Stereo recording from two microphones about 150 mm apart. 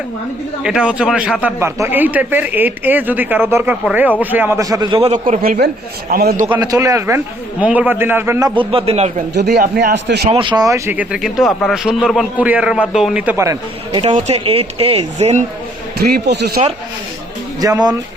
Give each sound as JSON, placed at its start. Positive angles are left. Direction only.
{"t": 0.6, "sound": "a man's voice", "side_deg": -5}
{"t": 5.1, "sound": "a man's voice", "side_deg": -55}
{"t": 5.4, "sound": "a man's voice", "side_deg": -85}
{"t": 6.6, "sound": "a man's voice", "side_deg": -25}
{"t": 7.6, "sound": "a man's voice", "side_deg": -10}
{"t": 8.7, "sound": "speech", "side_deg": -45}
{"t": 9.3, "sound": "speech", "side_deg": -90}
{"t": 10.2, "sound": "a man's voice", "side_deg": -35}
{"t": 13.3, "sound": "a man's voice", "side_deg": -20}
{"t": 14.1, "sound": "speech", "side_deg": -45}
{"t": 16.0, "sound": "speech", "side_deg": -90}
{"t": 17.6, "sound": "a man's voice", "side_deg": -25}